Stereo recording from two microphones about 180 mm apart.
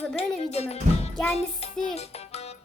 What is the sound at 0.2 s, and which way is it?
Music, 35° left (ahead or behind).